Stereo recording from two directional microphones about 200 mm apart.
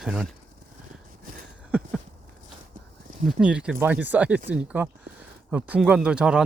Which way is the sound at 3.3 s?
5° right (ahead or behind).